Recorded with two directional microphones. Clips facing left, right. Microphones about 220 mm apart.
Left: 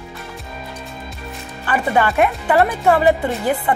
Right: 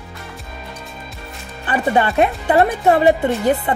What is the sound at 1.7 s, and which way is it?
Speech, 20° right (ahead or behind).